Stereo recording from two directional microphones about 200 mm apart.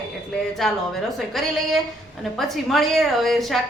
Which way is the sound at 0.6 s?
Centre (ahead or behind).